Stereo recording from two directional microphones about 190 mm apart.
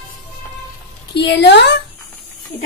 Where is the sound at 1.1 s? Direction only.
65° left (ahead or behind).